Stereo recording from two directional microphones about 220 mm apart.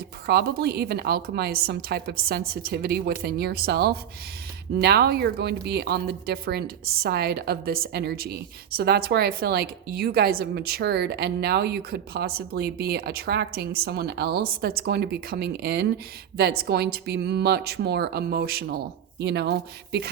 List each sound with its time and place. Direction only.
0.3 s a woman's voice: 45° right (ahead or behind)